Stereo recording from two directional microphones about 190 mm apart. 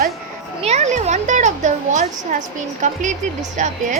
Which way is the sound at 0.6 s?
35° right (ahead or behind).